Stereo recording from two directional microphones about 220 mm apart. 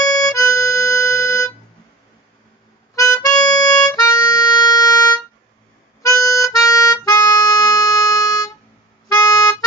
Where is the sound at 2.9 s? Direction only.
15° left (ahead or behind).